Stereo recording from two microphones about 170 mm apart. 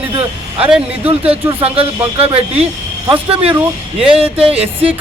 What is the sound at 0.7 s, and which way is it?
Speech, 5° right (ahead or behind).